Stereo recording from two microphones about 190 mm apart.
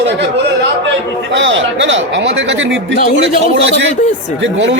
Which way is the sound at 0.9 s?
70° right (ahead or behind).